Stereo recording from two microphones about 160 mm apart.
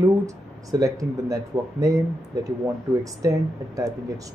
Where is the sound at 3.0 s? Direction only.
20° right (ahead or behind).